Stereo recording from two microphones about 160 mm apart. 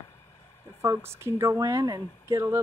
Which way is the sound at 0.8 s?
15° right (ahead or behind).